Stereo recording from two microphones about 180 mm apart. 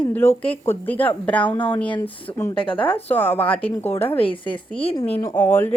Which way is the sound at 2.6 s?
30° left (ahead or behind).